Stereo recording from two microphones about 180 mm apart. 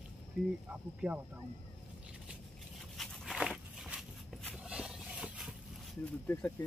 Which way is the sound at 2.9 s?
Centre (ahead or behind).